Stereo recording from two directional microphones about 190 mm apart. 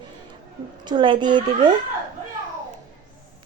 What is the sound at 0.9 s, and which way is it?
Speech, 25° right (ahead or behind).